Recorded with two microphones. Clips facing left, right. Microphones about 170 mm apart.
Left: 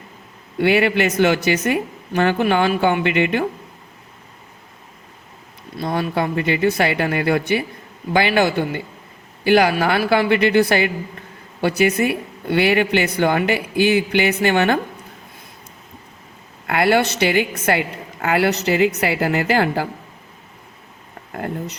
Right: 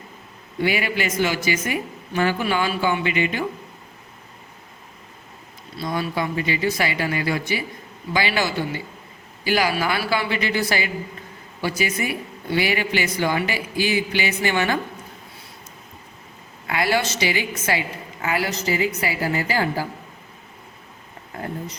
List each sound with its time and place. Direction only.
0.6 s a woman's voice: 60° left (ahead or behind)
5.7 s a woman's voice: 55° left (ahead or behind)
16.6 s a woman's voice: 60° left (ahead or behind)
21.3 s a woman's voice: 65° left (ahead or behind)